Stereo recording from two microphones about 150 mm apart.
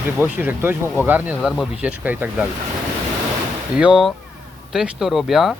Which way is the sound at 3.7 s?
5° right (ahead or behind).